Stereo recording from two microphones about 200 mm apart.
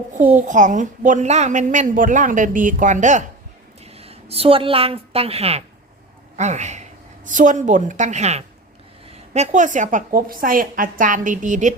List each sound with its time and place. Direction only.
0.1 s a woman's voice: 35° right (ahead or behind)